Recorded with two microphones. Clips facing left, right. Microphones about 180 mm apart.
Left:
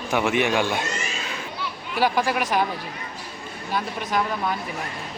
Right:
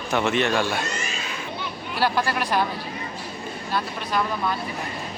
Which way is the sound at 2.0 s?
15° left (ahead or behind).